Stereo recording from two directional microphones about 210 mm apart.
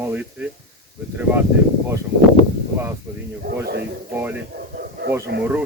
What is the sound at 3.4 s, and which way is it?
Speech, 50° right (ahead or behind).